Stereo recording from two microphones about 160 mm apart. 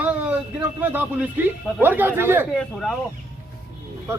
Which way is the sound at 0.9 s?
10° right (ahead or behind).